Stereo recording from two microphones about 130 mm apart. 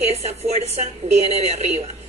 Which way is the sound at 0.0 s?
55° right (ahead or behind).